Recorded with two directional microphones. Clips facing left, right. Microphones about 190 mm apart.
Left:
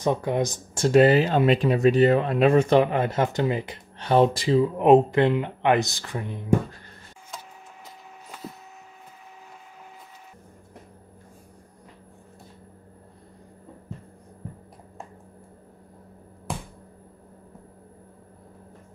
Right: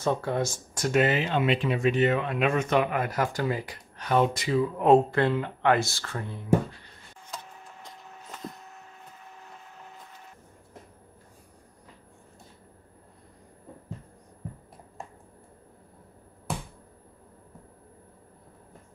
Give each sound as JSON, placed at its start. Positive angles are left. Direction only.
{"t": 0.0, "sound": "speech", "side_deg": 15}
{"t": 0.8, "sound": "speech", "side_deg": 35}
{"t": 7.2, "sound": "wood", "side_deg": 5}